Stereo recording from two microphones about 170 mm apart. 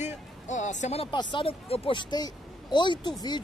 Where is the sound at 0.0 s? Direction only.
45° left (ahead or behind).